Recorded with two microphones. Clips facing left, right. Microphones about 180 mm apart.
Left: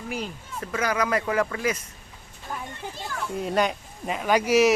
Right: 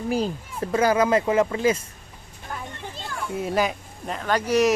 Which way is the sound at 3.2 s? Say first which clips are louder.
Right 1 dB; centre (ahead or behind).